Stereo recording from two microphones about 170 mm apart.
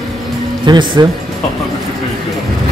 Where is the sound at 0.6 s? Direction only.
25° right (ahead or behind).